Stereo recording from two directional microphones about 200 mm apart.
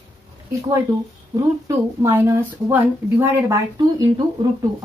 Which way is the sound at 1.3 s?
15° right (ahead or behind).